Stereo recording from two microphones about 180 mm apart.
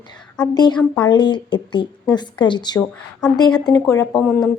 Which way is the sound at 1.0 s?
25° left (ahead or behind).